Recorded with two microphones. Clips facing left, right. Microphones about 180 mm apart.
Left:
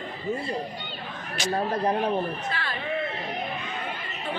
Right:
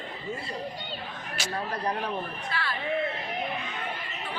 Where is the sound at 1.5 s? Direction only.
25° left (ahead or behind).